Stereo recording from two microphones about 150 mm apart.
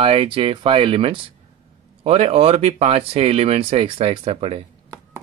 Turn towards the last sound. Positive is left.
turn(degrees=-40)  # may be behind; listen again after turning